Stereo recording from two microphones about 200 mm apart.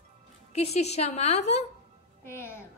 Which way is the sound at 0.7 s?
30° left (ahead or behind).